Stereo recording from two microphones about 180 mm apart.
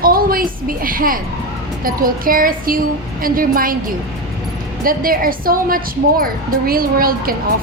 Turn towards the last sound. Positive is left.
turn(degrees=-55)  # may be behind; listen again after turning